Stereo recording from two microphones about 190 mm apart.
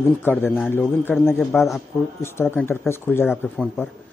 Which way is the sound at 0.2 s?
10° left (ahead or behind).